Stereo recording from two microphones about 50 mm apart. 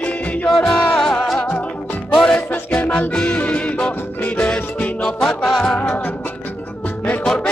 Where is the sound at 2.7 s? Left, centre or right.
Left.